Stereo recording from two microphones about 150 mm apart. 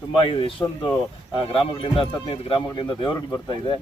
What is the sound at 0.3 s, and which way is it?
Speech, 35° left (ahead or behind).